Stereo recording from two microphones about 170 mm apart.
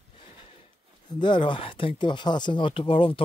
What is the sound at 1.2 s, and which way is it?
A man's voice, 30° left (ahead or behind).